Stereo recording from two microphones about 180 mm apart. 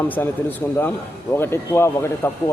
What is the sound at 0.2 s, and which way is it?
Speech, 10° left (ahead or behind).